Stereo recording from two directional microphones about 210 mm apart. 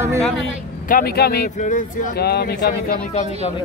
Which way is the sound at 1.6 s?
40° left (ahead or behind).